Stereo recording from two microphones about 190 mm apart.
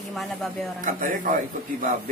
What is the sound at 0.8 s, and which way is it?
Speech, 45° right (ahead or behind).